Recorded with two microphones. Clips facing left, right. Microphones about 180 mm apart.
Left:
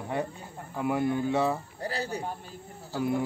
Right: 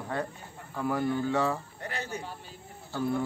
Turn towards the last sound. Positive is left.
turn(degrees=15)  # may be behind; listen again after turning